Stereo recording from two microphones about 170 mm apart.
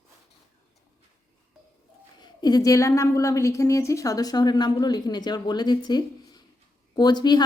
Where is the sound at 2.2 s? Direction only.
25° left (ahead or behind).